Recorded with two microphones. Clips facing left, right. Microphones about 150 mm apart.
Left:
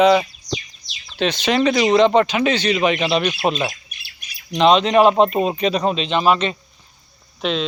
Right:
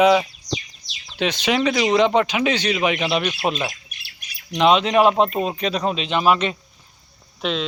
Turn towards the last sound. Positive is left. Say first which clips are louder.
# left 2 dB
turn(degrees=-5)  # may be behind; listen again after turning